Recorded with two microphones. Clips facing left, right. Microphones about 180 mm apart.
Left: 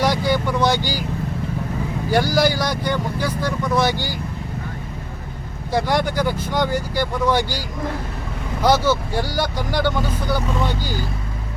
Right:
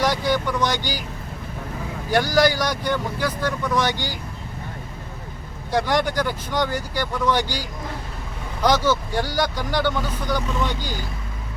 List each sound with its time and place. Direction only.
0.0 s speech: 10° left (ahead or behind)
2.0 s speech: 10° left (ahead or behind)
5.7 s speech: 10° left (ahead or behind)
8.6 s speech: 10° left (ahead or behind)